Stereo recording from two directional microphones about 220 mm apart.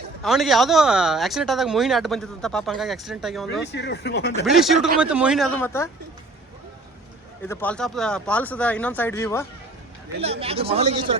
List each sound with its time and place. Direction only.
0.2 s speech: centre (ahead or behind)
3.7 s speech: 50° left (ahead or behind)
4.4 s speech: centre (ahead or behind)
7.4 s speech: 10° left (ahead or behind)
10.2 s speech: 25° right (ahead or behind)